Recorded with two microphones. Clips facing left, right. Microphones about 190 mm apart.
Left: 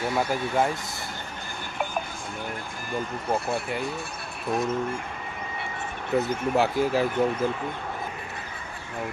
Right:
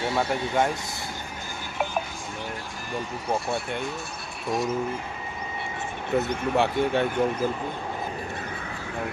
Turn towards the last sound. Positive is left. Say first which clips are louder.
# even
turn(degrees=0)  # may be behind; listen again after turning